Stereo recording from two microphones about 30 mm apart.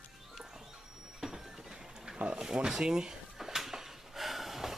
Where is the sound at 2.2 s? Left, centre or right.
Right.